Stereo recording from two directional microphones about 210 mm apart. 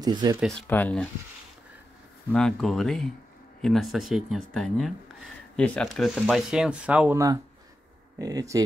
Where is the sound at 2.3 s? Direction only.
5° left (ahead or behind).